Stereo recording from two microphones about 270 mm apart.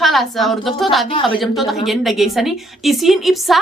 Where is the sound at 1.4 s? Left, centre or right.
Centre.